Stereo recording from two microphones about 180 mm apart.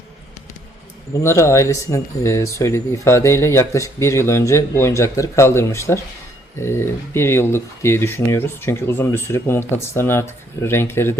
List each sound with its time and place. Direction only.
1.2 s speech: 15° left (ahead or behind)